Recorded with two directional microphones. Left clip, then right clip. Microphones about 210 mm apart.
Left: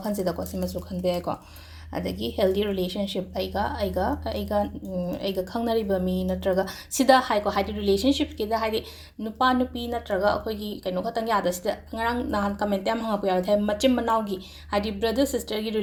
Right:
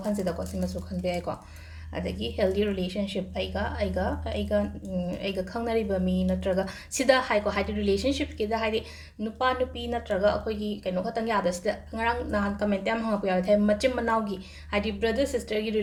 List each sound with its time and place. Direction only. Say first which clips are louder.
0.3 s speech: left 3 dB; 30° left (ahead or behind)
10.5 s speech: even; centre (ahead or behind)
10.8 s speech: left 3 dB; 25° left (ahead or behind)